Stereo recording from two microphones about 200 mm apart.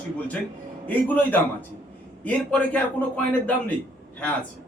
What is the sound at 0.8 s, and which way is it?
A man's voice, 10° left (ahead or behind).